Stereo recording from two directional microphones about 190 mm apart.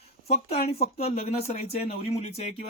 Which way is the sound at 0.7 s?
35° left (ahead or behind).